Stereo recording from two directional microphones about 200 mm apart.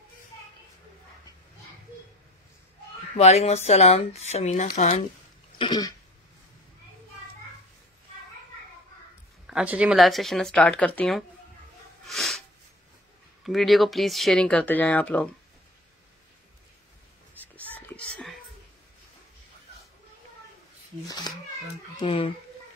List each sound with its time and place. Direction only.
3.2 s speech: 30° left (ahead or behind)
5.6 s cough: 20° left (ahead or behind)
9.5 s speech: 5° right (ahead or behind)
12.1 s sneeze: centre (ahead or behind)
13.4 s speech: centre (ahead or behind)
17.3 s a sound: 10° right (ahead or behind)
17.7 s a sound: 5° left (ahead or behind)
22.0 s cough: 25° left (ahead or behind)